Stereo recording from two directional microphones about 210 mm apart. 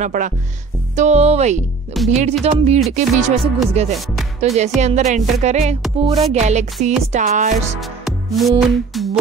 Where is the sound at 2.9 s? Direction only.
35° right (ahead or behind).